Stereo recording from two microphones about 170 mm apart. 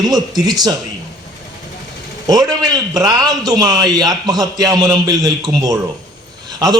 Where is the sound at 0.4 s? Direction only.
25° right (ahead or behind).